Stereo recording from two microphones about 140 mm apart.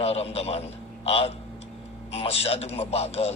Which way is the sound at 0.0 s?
45° left (ahead or behind).